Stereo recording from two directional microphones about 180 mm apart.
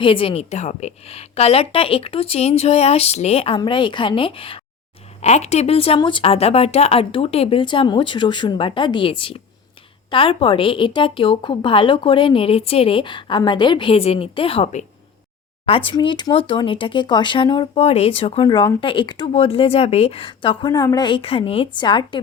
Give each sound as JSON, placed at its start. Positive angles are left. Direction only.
{"t": 0.0, "sound": "a woman's voice", "side_deg": 30}
{"t": 15.9, "sound": "a woman's voice", "side_deg": 25}